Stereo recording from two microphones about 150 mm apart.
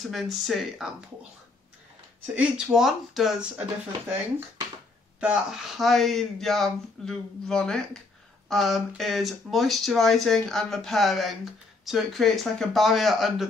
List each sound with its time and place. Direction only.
0.0 s speech: centre (ahead or behind)
2.3 s speech: 5° right (ahead or behind)
5.2 s speech: 5° right (ahead or behind)